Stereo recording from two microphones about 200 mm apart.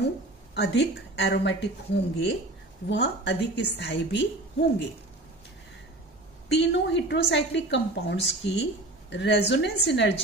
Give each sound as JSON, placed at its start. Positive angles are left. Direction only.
{"t": 0.6, "sound": "a woman's voice", "side_deg": 60}
{"t": 6.5, "sound": "a woman's voice", "side_deg": 60}